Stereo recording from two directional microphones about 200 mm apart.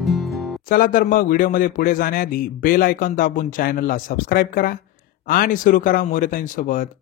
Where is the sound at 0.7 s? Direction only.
45° left (ahead or behind).